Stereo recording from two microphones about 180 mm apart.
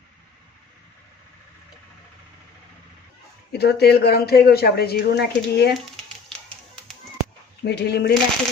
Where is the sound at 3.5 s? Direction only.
65° left (ahead or behind).